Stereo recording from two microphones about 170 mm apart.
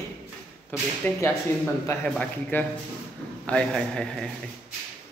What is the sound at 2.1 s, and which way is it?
A man's voice, 10° left (ahead or behind).